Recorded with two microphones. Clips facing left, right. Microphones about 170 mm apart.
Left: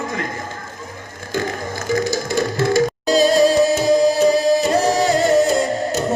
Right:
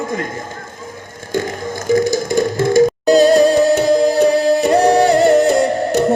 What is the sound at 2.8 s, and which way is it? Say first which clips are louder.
Music: right 7 dB; 60° right (ahead or behind).